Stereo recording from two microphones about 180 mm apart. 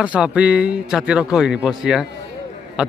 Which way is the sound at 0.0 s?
5° right (ahead or behind).